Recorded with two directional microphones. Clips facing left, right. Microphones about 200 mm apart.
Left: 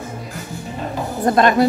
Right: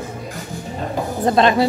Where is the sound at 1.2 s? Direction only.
25° right (ahead or behind).